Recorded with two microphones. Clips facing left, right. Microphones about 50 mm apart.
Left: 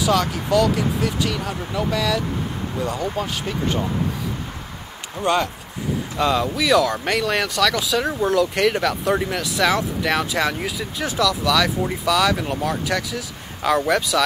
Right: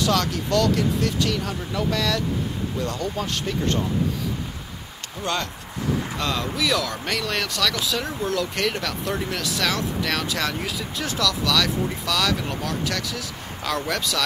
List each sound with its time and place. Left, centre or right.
0.0 s speech: centre
5.2 s speech: centre
8.0 s speech: centre